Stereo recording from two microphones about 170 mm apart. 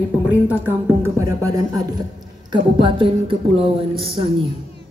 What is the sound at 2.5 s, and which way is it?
A woman's voice, 30° right (ahead or behind).